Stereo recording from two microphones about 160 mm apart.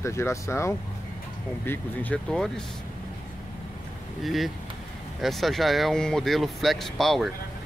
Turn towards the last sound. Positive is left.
turn(degrees=0)  # may be behind; listen again after turning